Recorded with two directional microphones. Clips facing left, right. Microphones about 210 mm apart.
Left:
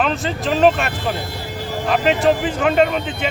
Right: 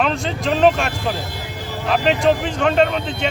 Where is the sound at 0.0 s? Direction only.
Centre (ahead or behind).